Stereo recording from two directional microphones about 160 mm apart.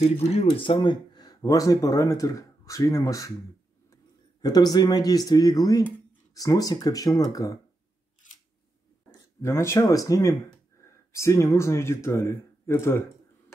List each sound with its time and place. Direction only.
0.0 s speech: 40° left (ahead or behind); by 7.5 s 20° left (ahead or behind)
9.1 s speech: 20° left (ahead or behind)